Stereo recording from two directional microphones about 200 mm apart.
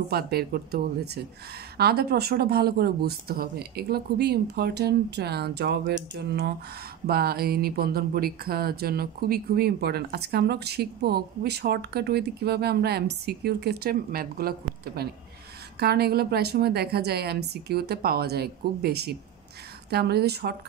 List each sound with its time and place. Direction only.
0.1 s speech: 50° right (ahead or behind)